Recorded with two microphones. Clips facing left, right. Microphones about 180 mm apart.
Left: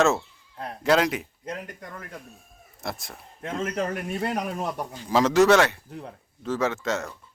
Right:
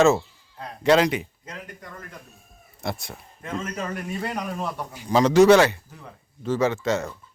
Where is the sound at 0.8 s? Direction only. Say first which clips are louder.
Right 3 dB; centre (ahead or behind).